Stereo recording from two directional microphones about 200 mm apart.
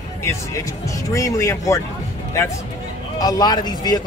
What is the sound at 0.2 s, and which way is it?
Speech, 15° left (ahead or behind).